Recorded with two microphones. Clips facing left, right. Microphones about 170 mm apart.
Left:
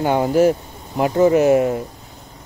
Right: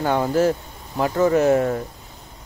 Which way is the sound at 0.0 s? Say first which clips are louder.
Left 4 dB; 15° left (ahead or behind).